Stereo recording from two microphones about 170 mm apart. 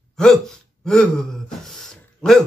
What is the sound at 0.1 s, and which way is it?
Hiccup, 5° left (ahead or behind).